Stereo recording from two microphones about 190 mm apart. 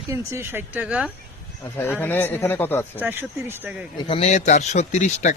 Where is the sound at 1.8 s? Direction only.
10° left (ahead or behind).